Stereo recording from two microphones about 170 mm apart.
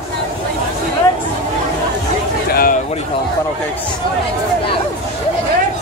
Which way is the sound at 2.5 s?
55° left (ahead or behind).